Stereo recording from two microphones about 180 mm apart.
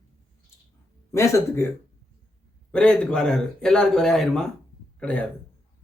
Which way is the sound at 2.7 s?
5° left (ahead or behind).